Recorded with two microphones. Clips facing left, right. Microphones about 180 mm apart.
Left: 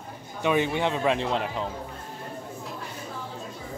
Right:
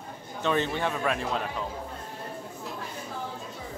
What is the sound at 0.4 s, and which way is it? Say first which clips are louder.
Speech: left 3 dB; 15° left (ahead or behind).